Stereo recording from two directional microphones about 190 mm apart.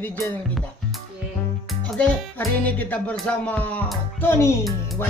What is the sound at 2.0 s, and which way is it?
Music, 10° left (ahead or behind).